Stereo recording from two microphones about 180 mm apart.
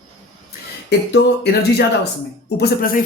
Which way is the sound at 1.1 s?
65° left (ahead or behind).